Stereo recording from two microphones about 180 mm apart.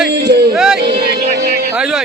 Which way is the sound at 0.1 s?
65° right (ahead or behind).